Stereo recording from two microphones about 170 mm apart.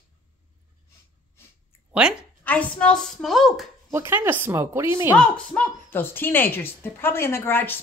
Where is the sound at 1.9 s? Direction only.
5° right (ahead or behind).